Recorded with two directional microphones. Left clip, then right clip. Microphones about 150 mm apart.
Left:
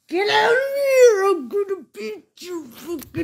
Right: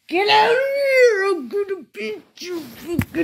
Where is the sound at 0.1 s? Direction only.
5° left (ahead or behind).